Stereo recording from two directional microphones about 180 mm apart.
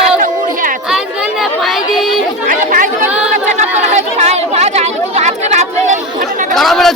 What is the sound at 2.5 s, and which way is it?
Chatter, 50° right (ahead or behind).